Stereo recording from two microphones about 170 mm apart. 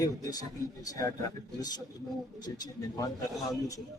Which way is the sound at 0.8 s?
20° left (ahead or behind).